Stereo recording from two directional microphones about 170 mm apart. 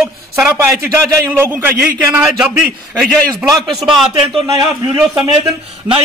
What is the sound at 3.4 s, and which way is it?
Speech, 20° right (ahead or behind).